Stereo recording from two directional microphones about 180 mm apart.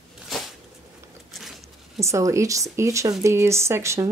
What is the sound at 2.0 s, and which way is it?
Speech, 15° right (ahead or behind).